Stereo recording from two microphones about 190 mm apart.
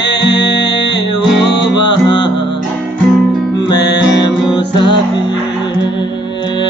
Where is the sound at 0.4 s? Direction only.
25° left (ahead or behind).